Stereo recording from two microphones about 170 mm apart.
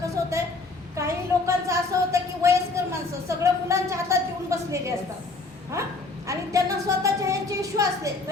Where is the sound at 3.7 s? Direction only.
15° right (ahead or behind).